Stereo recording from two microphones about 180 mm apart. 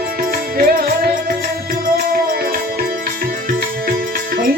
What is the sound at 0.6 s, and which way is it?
Music, 50° right (ahead or behind).